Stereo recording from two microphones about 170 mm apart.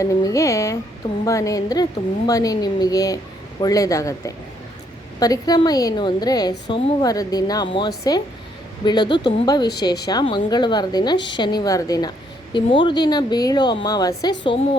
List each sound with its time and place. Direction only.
0.0 s a woman's voice: 20° left (ahead or behind)